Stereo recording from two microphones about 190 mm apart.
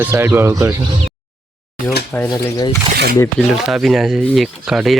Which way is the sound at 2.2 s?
20° left (ahead or behind).